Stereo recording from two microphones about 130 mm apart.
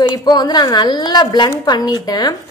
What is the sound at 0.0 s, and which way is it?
A woman's voice, 30° left (ahead or behind).